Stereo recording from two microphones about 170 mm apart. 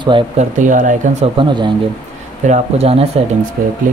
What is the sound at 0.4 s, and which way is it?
Speech, 50° right (ahead or behind).